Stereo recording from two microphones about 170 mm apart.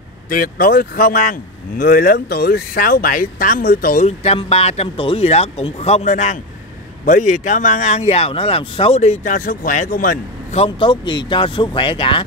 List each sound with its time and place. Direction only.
0.3 s speech: 60° left (ahead or behind)
4.2 s speech: 35° left (ahead or behind); by 10.1 s 50° left (ahead or behind)
10.5 s speech: 35° left (ahead or behind)